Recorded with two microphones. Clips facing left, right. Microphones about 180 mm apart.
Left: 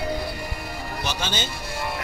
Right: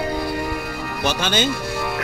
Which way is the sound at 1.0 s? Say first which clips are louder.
Right 9 dB; 65° right (ahead or behind).